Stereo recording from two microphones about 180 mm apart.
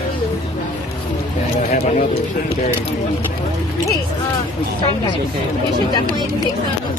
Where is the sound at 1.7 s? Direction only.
40° left (ahead or behind).